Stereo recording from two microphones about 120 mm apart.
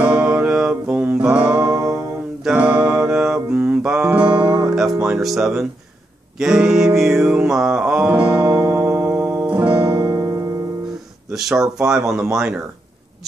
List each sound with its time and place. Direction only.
0.0 s music: 10° right (ahead or behind)
5.0 s speech: 5° right (ahead or behind)
7.0 s music: 5° right (ahead or behind); by 10.5 s 30° right (ahead or behind)
11.3 s speech: 5° right (ahead or behind)